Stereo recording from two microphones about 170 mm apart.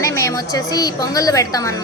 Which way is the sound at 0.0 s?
20° left (ahead or behind).